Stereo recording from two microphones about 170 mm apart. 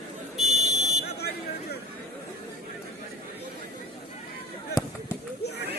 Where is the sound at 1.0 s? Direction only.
70° left (ahead or behind).